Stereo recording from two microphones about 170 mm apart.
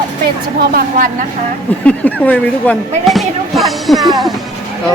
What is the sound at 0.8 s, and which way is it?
Speech, 55° right (ahead or behind).